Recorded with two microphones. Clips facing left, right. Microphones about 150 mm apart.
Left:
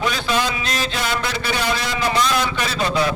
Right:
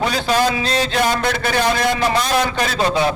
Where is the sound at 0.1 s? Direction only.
40° right (ahead or behind).